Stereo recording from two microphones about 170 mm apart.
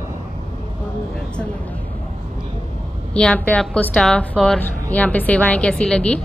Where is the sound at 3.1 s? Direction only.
5° left (ahead or behind).